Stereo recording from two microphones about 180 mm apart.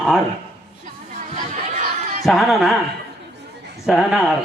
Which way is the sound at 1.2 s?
45° right (ahead or behind).